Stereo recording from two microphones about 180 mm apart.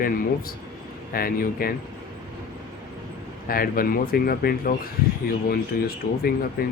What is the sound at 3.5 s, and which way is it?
Speech, 55° left (ahead or behind).